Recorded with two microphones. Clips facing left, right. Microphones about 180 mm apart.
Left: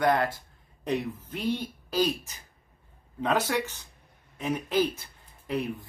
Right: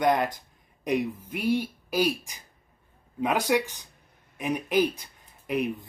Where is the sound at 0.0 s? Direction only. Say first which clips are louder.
Right 1 dB; 15° right (ahead or behind).